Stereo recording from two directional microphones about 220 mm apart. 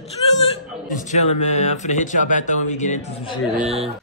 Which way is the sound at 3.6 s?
25° right (ahead or behind).